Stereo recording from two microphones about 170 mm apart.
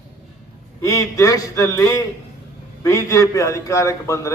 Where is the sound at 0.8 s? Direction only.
20° left (ahead or behind).